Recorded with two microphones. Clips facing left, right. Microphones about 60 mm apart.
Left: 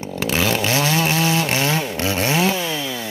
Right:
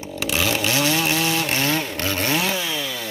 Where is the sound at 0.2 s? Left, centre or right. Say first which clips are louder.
Left 2 dB; left.